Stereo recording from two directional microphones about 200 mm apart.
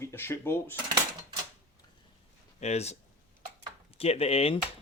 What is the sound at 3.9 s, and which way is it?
Speech, 30° left (ahead or behind).